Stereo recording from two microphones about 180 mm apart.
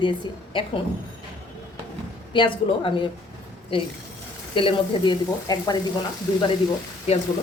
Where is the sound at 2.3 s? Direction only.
25° left (ahead or behind).